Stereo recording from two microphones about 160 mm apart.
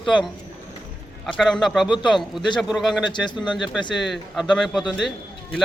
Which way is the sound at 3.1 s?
30° left (ahead or behind).